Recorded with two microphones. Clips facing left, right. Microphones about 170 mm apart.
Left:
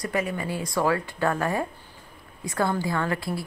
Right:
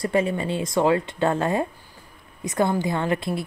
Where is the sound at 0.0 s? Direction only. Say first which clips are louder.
Right 5 dB; 25° right (ahead or behind).